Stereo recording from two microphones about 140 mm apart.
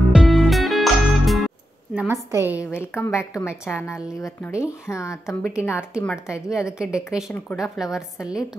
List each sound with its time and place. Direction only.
0.1 s music: 5° right (ahead or behind)
2.0 s a woman's voice: 15° right (ahead or behind)
2.7 s a woman's voice: 15° left (ahead or behind)
6.2 s a woman's voice: 5° right (ahead or behind)